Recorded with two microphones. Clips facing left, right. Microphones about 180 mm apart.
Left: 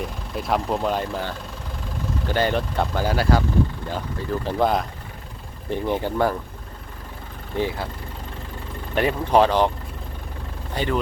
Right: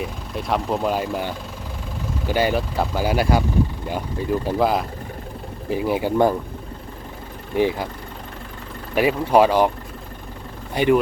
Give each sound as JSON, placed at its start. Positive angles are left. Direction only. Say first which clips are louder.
{"t": 0.0, "sound": "speech", "louder": "right 1 dB", "side_deg": 0}
{"t": 7.5, "sound": "speech", "louder": "right 5 dB", "side_deg": -15}
{"t": 9.0, "sound": "speech", "louder": "right 2 dB", "side_deg": -10}
{"t": 10.8, "sound": "speech", "louder": "right 7 dB", "side_deg": -15}